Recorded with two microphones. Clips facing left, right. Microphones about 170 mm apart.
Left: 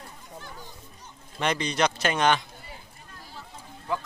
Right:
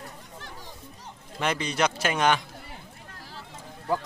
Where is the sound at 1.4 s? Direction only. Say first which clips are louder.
Left 1 dB; 5° right (ahead or behind).